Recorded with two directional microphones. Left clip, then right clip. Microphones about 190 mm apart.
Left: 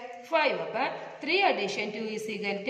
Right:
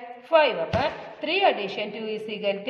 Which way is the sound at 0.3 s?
40° right (ahead or behind).